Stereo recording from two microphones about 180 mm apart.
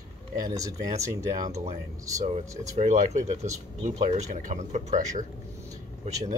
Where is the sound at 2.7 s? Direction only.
40° right (ahead or behind).